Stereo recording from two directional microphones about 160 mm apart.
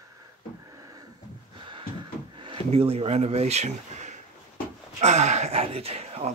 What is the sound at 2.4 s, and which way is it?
Speech, 30° right (ahead or behind).